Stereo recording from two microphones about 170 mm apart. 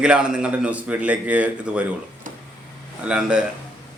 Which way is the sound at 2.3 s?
50° right (ahead or behind).